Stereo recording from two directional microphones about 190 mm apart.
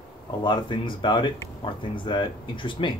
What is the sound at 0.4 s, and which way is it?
Speech, 25° left (ahead or behind).